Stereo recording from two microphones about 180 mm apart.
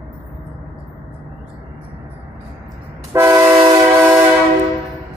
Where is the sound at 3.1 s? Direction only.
15° right (ahead or behind).